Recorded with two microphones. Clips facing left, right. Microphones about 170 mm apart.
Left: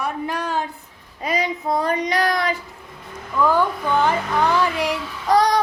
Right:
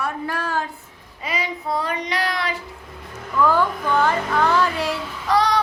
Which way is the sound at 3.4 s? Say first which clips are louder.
Left 1 dB; 15° left (ahead or behind).